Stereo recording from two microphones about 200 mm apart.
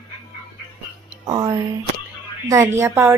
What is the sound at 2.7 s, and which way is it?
Speech, 15° right (ahead or behind).